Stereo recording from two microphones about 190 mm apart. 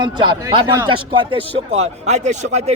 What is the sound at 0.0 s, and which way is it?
Speech, 25° right (ahead or behind).